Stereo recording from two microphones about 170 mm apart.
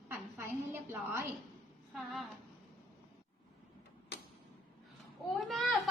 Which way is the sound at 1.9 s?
Centre (ahead or behind).